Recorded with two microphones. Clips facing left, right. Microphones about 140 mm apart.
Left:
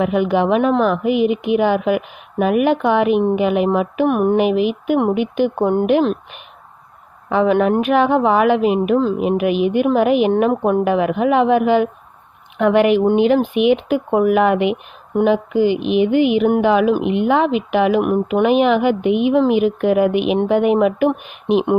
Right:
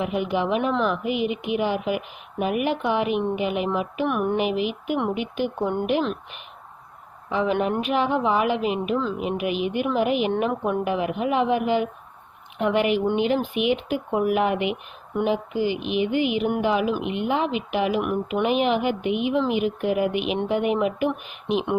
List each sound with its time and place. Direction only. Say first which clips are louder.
0.0 s speech: left 8 dB; 60° left (ahead or behind)
7.3 s speech: left 8 dB; 55° left (ahead or behind)
10.8 s speech: left 8 dB; 70° left (ahead or behind)